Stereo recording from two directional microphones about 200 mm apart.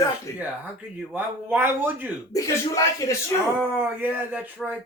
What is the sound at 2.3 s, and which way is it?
Speech, 15° left (ahead or behind).